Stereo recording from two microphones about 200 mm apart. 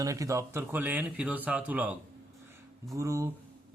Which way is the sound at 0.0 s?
15° right (ahead or behind).